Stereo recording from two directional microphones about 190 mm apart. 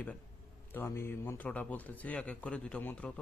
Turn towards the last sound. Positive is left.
turn(degrees=5)  # may be behind; listen again after turning